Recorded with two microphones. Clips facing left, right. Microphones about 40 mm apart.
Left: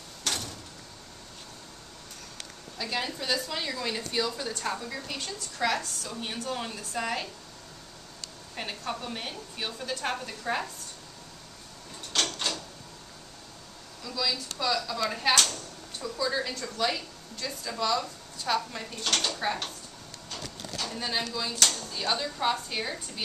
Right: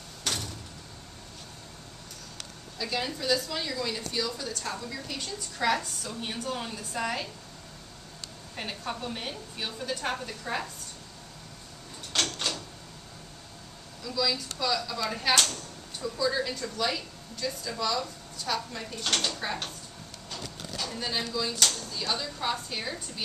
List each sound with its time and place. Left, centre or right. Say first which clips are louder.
0.2 s door: even; centre
2.8 s a woman's voice: right 1 dB; centre
5.7 s a woman's voice: right 5 dB; centre
8.5 s a woman's voice: left 1 dB; centre
12.1 s drawer open or close: even; centre
14.0 s speech: right 2 dB; centre
20.2 s a sound: even; centre
21.3 s speech: right 2 dB; centre
21.9 s speech: left 2 dB; left